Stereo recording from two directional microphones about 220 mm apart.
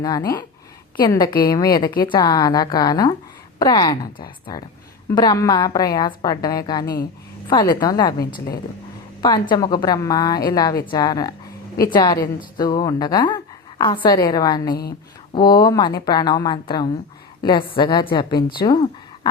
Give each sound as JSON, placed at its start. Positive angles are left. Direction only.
{"t": 0.0, "sound": "a woman's voice", "side_deg": 15}
{"t": 9.2, "sound": "a woman's voice", "side_deg": 20}